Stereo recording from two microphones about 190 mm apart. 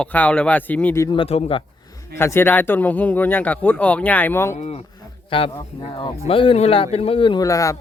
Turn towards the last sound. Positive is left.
turn(degrees=15)  # may be behind; listen again after turning